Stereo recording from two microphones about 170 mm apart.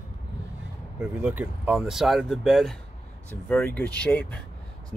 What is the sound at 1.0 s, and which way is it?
Speech, 5° right (ahead or behind).